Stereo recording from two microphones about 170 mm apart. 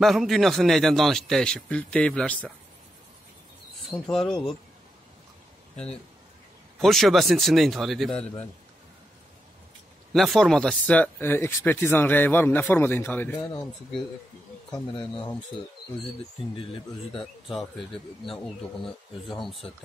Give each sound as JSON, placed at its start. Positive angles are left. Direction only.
{"t": 0.0, "sound": "a man's voice", "side_deg": 0}
{"t": 3.9, "sound": "a man's voice", "side_deg": 0}
{"t": 6.8, "sound": "a man's voice", "side_deg": 0}
{"t": 10.1, "sound": "speech", "side_deg": 0}
{"t": 14.7, "sound": "speech", "side_deg": 30}
{"t": 17.2, "sound": "a man's voice", "side_deg": 0}
{"t": 19.2, "sound": "a man's voice", "side_deg": 0}